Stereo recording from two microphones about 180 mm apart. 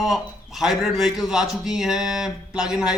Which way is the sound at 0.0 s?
Centre (ahead or behind).